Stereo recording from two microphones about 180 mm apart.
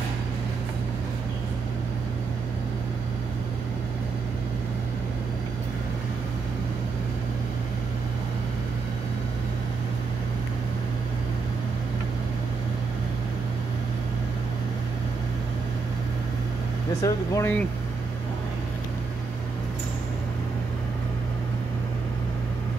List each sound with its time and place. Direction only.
17.0 s speech: 15° left (ahead or behind)